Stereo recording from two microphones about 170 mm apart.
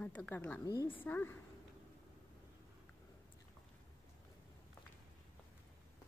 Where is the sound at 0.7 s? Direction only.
25° left (ahead or behind).